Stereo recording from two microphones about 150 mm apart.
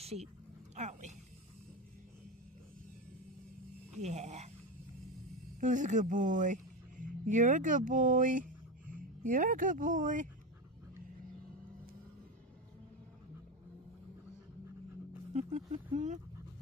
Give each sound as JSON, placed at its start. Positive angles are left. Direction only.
{"t": 0.0, "sound": "speech", "side_deg": -45}
{"t": 3.9, "sound": "speech", "side_deg": -50}
{"t": 5.6, "sound": "speech", "side_deg": -55}
{"t": 15.3, "sound": "vehicle", "side_deg": -50}